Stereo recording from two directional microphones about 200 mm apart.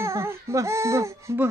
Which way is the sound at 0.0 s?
15° right (ahead or behind).